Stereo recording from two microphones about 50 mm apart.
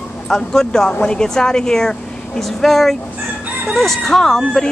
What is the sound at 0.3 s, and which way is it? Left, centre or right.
Speech, centre.